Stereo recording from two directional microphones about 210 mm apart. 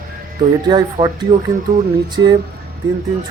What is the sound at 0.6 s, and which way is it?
Speech, 20° right (ahead or behind).